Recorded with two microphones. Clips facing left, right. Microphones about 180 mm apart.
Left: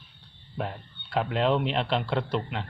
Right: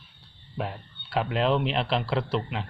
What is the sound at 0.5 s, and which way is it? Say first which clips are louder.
A man's voice: even; centre (ahead or behind).